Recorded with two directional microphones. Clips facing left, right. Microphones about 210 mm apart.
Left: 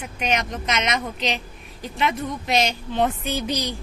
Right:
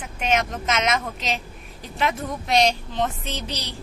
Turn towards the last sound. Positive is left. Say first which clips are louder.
# left 6 dB
turn(degrees=15)  # may be behind; listen again after turning